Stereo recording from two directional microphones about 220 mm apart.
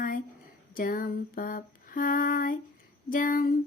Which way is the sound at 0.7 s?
40° left (ahead or behind).